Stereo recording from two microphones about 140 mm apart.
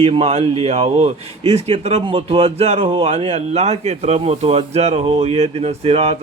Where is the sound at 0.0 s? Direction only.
45° right (ahead or behind).